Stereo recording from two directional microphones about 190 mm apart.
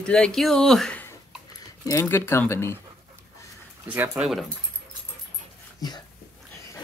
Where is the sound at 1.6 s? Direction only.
15° left (ahead or behind).